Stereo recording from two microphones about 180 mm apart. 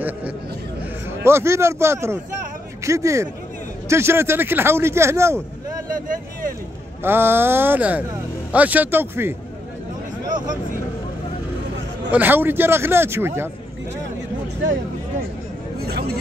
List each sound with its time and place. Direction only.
1.2 s speech: 15° right (ahead or behind)
5.9 s speech: 50° right (ahead or behind)
7.0 s speech: 10° right (ahead or behind)
12.1 s speech: 10° right (ahead or behind)
15.8 s speech: 60° right (ahead or behind)